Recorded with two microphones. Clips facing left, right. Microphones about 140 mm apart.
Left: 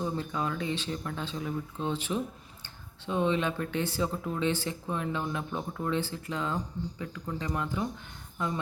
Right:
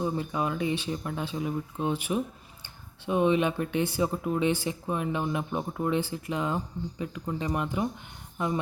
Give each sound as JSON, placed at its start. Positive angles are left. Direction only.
{"t": 0.0, "sound": "speech", "side_deg": -15}